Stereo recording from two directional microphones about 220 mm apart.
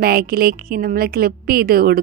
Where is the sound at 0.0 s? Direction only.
45° right (ahead or behind).